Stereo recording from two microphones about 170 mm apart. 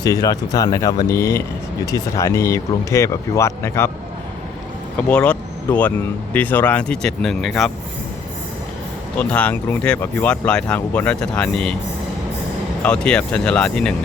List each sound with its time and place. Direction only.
0.0 s speech: 20° left (ahead or behind)
4.9 s speech: 10° left (ahead or behind)
9.1 s speech: 10° left (ahead or behind)
12.8 s speech: 5° left (ahead or behind)